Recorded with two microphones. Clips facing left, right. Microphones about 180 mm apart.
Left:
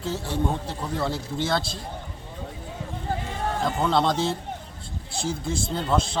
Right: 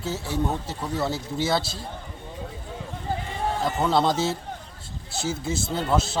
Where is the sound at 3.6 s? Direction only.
5° right (ahead or behind).